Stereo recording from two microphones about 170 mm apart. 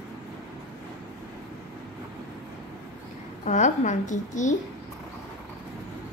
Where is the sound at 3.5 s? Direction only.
45° left (ahead or behind).